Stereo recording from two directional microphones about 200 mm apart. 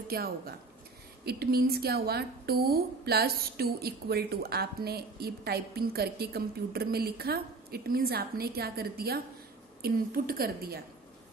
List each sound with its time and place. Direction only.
0.1 s a woman's voice: 50° right (ahead or behind)